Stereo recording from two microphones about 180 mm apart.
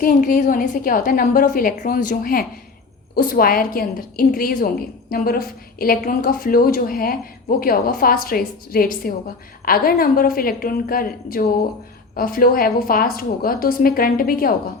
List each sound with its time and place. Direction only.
0.0 s a woman's voice: 45° left (ahead or behind)